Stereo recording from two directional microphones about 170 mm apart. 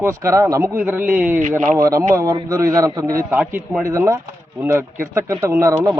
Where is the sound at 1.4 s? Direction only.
50° right (ahead or behind).